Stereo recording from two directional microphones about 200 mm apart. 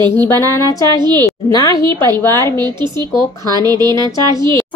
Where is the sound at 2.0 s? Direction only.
20° right (ahead or behind).